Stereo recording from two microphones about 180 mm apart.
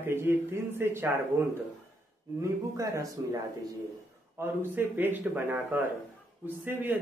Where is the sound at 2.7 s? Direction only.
20° right (ahead or behind).